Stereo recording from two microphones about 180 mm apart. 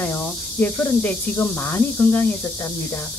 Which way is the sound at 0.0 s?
10° left (ahead or behind).